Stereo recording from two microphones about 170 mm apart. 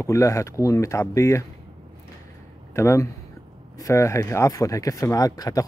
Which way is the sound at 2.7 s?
15° left (ahead or behind).